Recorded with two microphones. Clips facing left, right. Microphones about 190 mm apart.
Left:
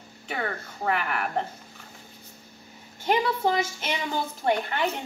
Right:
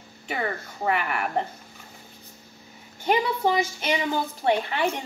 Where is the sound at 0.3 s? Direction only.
5° right (ahead or behind).